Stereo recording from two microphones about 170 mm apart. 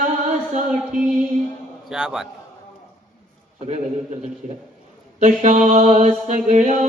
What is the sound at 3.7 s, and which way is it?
Speech, 40° right (ahead or behind).